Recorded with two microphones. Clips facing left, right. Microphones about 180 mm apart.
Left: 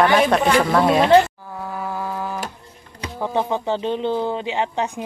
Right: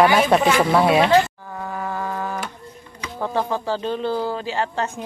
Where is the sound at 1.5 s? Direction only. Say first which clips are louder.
Even; 5° left (ahead or behind).